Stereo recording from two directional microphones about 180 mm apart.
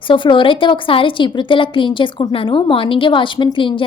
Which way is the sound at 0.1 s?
25° left (ahead or behind).